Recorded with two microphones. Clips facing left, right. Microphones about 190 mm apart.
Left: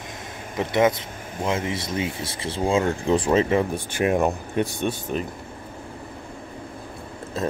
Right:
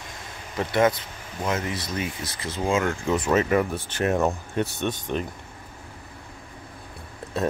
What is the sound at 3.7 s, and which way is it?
Speech, 10° left (ahead or behind).